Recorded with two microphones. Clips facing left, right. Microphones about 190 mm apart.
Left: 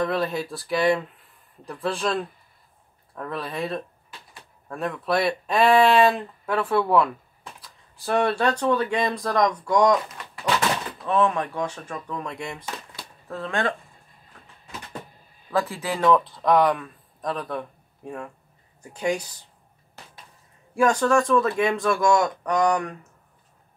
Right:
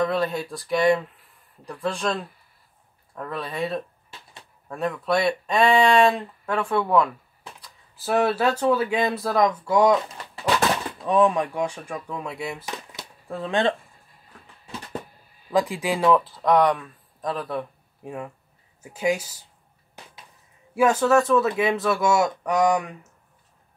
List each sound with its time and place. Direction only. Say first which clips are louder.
0.0 s speech: right 1 dB; centre (ahead or behind)
11.1 s speech: right 3 dB; 15° right (ahead or behind)
12.6 s a sound: right 1 dB; 20° right (ahead or behind)
15.5 s speech: right 3 dB; 15° right (ahead or behind)
20.7 s speech: right 1 dB; 5° right (ahead or behind)